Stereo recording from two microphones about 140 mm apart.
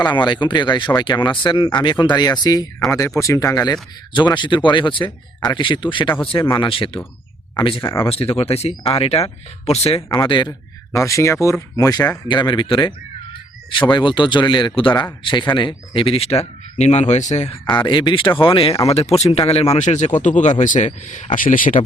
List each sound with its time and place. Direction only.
0.0 s speech: 30° left (ahead or behind)
7.8 s speech: 20° left (ahead or behind)
8.0 s speech: 45° left (ahead or behind)
10.1 s speech: 35° left (ahead or behind)
10.9 s speech: 20° left (ahead or behind); by 17.6 s 55° left (ahead or behind)
17.7 s speech: 35° left (ahead or behind); by 21.2 s 60° left (ahead or behind)
21.3 s speech: 75° left (ahead or behind)